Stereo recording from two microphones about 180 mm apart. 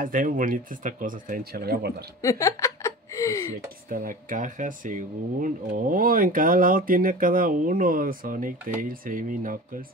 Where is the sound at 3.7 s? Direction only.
50° right (ahead or behind).